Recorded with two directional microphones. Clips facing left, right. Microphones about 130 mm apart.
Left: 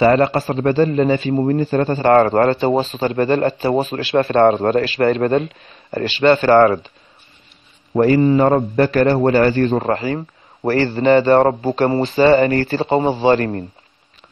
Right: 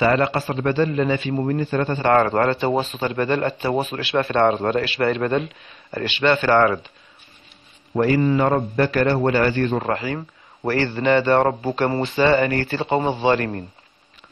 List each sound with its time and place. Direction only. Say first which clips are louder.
0.0 s a man's voice: left 5 dB; 35° left (ahead or behind)
7.9 s a man's voice: left 5 dB; 35° left (ahead or behind)